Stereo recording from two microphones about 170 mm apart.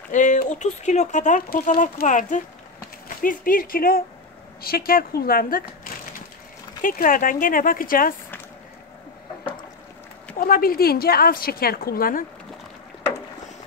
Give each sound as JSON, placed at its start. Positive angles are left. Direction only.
{"t": 0.1, "sound": "a woman's voice", "side_deg": 45}
{"t": 6.8, "sound": "a woman's voice", "side_deg": 55}
{"t": 10.4, "sound": "a woman's voice", "side_deg": 60}